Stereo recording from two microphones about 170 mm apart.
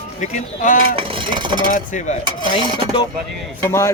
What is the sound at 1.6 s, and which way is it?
Speech, 50° left (ahead or behind).